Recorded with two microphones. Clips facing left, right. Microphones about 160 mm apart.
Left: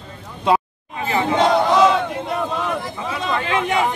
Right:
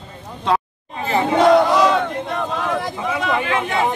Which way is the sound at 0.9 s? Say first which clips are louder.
Right 1 dB; 35° right (ahead or behind).